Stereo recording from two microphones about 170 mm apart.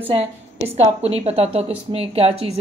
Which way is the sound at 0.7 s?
40° right (ahead or behind).